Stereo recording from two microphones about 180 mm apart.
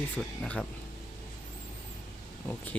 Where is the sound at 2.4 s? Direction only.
10° left (ahead or behind).